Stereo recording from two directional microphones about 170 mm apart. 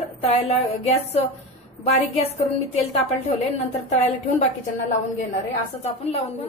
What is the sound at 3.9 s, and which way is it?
Speech, 40° left (ahead or behind).